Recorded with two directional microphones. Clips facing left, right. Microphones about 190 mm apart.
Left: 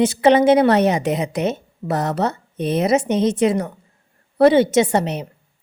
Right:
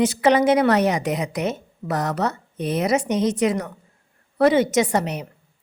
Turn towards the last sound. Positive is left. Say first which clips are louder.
# left 3 dB
turn(degrees=30)  # may be behind; listen again after turning